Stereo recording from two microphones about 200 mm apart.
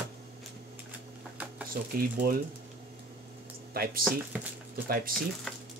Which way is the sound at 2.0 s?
45° right (ahead or behind).